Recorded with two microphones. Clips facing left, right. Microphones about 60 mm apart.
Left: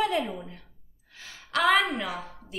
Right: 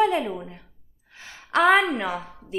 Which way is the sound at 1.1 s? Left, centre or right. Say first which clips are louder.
Right 5 dB; right.